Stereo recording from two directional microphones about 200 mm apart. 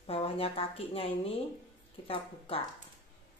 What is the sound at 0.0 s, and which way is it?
Speech, 30° left (ahead or behind).